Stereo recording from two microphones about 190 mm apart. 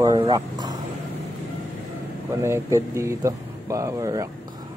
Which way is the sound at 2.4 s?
15° right (ahead or behind).